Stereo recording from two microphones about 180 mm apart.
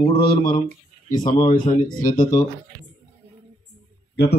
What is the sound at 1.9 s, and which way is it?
Speech, 50° left (ahead or behind).